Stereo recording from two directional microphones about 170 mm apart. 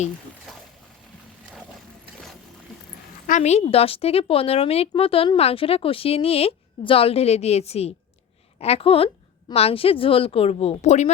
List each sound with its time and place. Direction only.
3.2 s a woman's voice: 45° left (ahead or behind)